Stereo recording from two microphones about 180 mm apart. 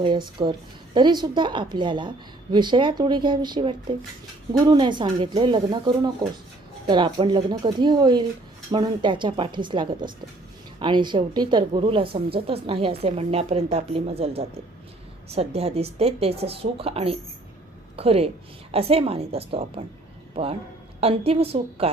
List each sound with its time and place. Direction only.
0.4 s a woman's voice: 20° right (ahead or behind)